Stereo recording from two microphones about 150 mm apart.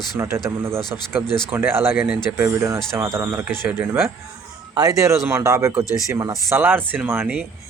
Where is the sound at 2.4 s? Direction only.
20° right (ahead or behind).